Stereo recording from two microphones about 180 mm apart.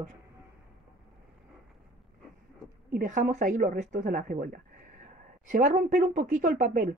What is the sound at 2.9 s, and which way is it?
Speech, 45° right (ahead or behind).